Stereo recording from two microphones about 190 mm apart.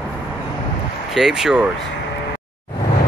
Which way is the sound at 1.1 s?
Centre (ahead or behind).